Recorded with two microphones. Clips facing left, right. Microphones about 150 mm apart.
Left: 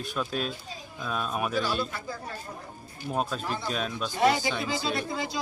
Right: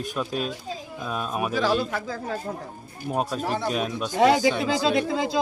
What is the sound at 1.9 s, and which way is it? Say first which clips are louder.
Speech: right 7 dB; 90° right.